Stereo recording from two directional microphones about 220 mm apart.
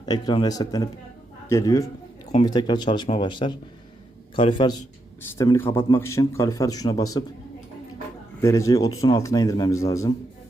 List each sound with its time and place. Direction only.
0.0 s a man's voice: 20° left (ahead or behind)
8.4 s a man's voice: 15° left (ahead or behind)